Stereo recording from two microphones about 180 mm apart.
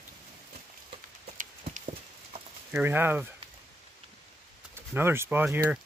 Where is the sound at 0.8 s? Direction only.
40° right (ahead or behind).